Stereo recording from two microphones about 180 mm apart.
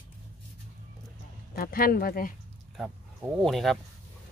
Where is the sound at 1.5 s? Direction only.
55° left (ahead or behind).